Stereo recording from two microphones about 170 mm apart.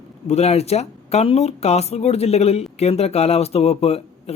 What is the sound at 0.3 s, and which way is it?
Speech, 40° left (ahead or behind).